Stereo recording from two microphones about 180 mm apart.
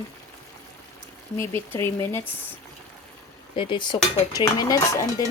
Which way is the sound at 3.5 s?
25° left (ahead or behind).